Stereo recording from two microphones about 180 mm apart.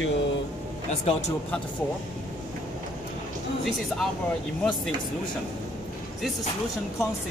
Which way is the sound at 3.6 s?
Centre (ahead or behind).